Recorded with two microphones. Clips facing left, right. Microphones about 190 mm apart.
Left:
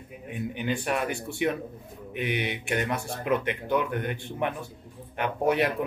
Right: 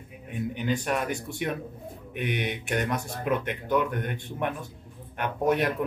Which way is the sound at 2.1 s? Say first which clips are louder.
Even; 5° left (ahead or behind).